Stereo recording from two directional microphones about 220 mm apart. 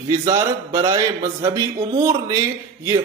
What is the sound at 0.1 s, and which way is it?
A man's voice, 15° right (ahead or behind).